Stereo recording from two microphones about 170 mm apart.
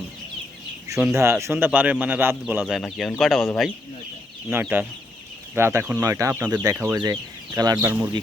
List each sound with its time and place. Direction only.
1.1 s speech: 15° right (ahead or behind); by 3.7 s centre (ahead or behind)
4.4 s speech: 10° right (ahead or behind)